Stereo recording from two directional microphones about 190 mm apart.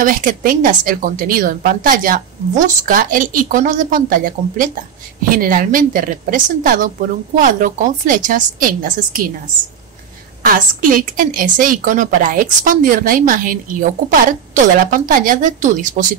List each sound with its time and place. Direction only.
0.0 s a woman's voice: 45° right (ahead or behind)
10.4 s a woman's voice: 45° right (ahead or behind)